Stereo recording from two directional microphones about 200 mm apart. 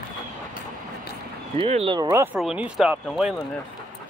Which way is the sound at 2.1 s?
10° right (ahead or behind).